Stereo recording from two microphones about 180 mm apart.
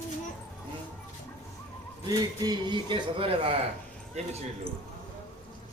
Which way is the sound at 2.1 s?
20° right (ahead or behind).